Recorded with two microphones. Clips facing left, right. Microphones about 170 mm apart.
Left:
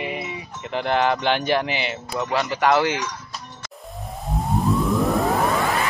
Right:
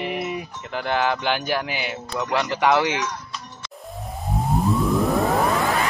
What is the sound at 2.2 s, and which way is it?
Speech, 10° left (ahead or behind).